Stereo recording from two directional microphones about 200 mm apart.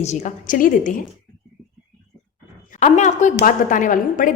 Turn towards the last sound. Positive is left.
turn(degrees=40)  # may be behind; listen again after turning